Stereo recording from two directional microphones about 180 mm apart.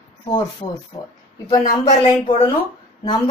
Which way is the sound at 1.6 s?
40° left (ahead or behind).